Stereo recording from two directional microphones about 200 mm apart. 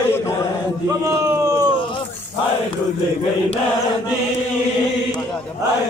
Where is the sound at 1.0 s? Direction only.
15° right (ahead or behind).